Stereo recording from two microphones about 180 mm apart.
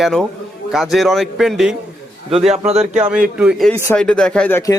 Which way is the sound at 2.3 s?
35° right (ahead or behind).